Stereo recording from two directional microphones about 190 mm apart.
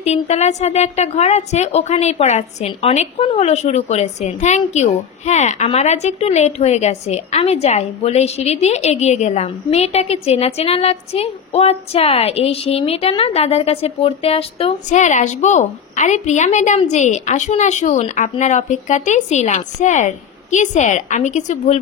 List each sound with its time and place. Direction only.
0.0 s a woman's voice: 35° left (ahead or behind)